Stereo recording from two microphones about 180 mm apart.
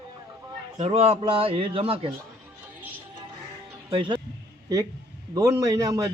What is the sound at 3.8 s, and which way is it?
Speech, 25° right (ahead or behind).